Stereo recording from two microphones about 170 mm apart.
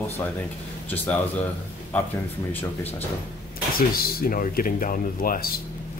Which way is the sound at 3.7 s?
60° left (ahead or behind).